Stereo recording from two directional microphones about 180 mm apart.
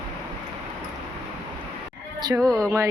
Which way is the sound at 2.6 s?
15° right (ahead or behind).